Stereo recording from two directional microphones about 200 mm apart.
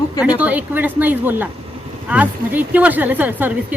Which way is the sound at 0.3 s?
5° right (ahead or behind).